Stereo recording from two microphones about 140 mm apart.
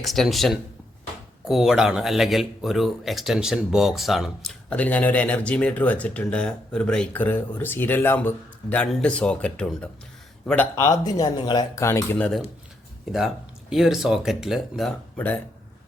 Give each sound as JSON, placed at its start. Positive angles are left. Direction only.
{"t": 0.0, "sound": "speech", "side_deg": 0}
{"t": 4.7, "sound": "speech", "side_deg": 10}
{"t": 10.8, "sound": "speech", "side_deg": 20}
{"t": 12.1, "sound": "speech", "side_deg": 10}
{"t": 13.1, "sound": "speech", "side_deg": -5}